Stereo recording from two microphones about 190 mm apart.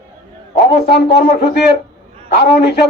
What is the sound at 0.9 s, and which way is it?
A man's voice, 60° left (ahead or behind).